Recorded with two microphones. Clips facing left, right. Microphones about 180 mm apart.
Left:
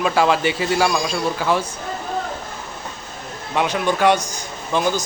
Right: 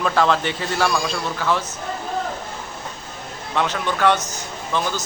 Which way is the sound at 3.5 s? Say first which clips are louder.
Left 3 dB; 15° left (ahead or behind).